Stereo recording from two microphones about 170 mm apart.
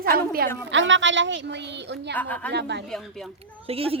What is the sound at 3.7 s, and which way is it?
Speech, 35° right (ahead or behind).